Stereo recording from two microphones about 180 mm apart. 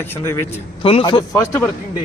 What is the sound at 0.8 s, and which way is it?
Speech, 30° left (ahead or behind).